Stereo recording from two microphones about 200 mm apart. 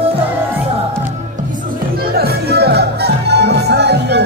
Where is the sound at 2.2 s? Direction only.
55° right (ahead or behind).